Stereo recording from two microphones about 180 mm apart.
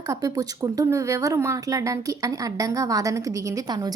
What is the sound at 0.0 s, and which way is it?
Speech, 20° right (ahead or behind).